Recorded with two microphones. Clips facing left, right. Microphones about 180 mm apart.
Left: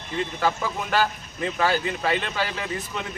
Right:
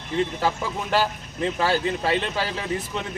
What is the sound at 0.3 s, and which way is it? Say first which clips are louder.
Speech: even; 30° right (ahead or behind).